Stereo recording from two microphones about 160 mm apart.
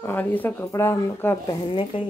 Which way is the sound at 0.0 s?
10° left (ahead or behind).